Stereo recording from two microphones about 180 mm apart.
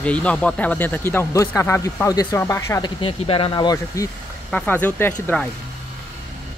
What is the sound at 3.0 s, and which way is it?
Speech, 30° left (ahead or behind).